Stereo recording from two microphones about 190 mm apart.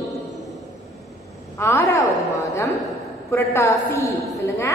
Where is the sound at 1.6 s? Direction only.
15° left (ahead or behind).